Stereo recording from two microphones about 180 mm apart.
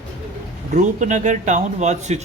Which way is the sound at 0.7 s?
45° right (ahead or behind).